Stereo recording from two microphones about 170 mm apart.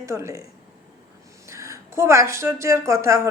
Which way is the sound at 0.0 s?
15° right (ahead or behind).